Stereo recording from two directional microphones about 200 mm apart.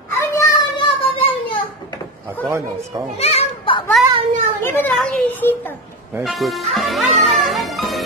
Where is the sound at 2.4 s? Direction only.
15° right (ahead or behind).